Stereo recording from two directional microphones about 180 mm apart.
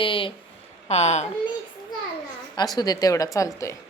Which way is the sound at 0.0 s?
30° left (ahead or behind).